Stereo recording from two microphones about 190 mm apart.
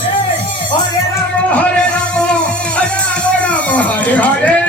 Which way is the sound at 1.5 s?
5° left (ahead or behind).